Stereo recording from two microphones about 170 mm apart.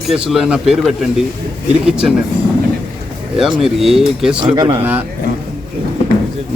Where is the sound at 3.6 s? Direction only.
Centre (ahead or behind).